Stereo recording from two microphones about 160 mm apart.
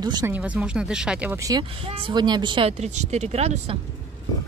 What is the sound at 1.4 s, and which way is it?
Speech, 20° right (ahead or behind).